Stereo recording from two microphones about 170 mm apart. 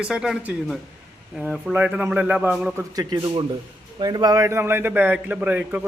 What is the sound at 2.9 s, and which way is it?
A man's voice, 25° right (ahead or behind).